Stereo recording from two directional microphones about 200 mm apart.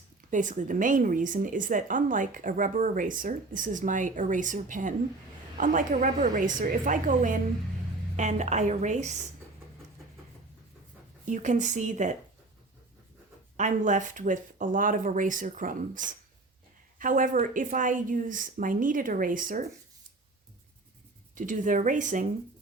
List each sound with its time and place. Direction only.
0.3 s speech: 40° right (ahead or behind)
11.3 s speech: 35° right (ahead or behind)
13.6 s speech: 40° right (ahead or behind)
21.3 s speech: 40° right (ahead or behind)